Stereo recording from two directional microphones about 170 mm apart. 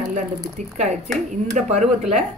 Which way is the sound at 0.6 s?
45° right (ahead or behind).